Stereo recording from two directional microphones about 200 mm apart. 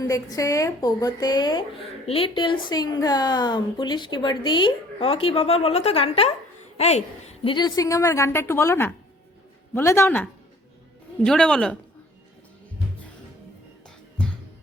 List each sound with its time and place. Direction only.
0.0 s speech: 15° left (ahead or behind); by 7.0 s 35° left (ahead or behind)
7.4 s a woman's voice: 20° left (ahead or behind); by 11.8 s 5° left (ahead or behind)